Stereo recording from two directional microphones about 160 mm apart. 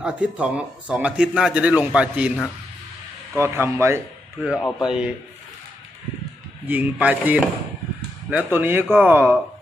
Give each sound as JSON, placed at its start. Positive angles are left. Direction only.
{"t": 0.0, "sound": "speech", "side_deg": -5}
{"t": 3.3, "sound": "speech", "side_deg": -15}
{"t": 4.4, "sound": "a man's voice", "side_deg": -5}
{"t": 6.6, "sound": "speech", "side_deg": -10}